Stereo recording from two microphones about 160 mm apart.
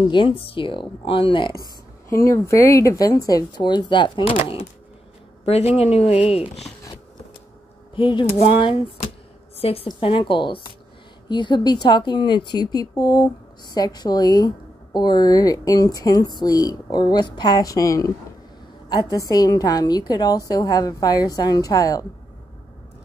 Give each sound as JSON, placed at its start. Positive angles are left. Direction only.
{"t": 0.1, "sound": "speech", "side_deg": 30}
{"t": 2.0, "sound": "speech", "side_deg": 20}
{"t": 7.9, "sound": "a woman's voice", "side_deg": 30}